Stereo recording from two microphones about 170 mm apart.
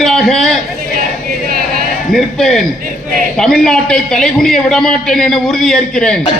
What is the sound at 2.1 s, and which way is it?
A man's voice, centre (ahead or behind).